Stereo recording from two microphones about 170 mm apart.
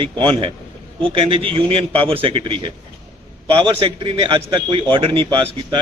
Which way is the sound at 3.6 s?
30° right (ahead or behind).